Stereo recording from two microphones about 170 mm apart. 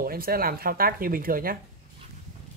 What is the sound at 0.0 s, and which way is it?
Speech, 60° right (ahead or behind).